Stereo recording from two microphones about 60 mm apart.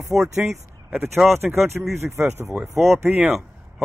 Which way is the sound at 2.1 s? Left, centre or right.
Right.